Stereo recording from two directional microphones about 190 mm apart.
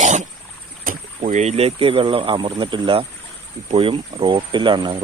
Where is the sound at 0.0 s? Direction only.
40° right (ahead or behind).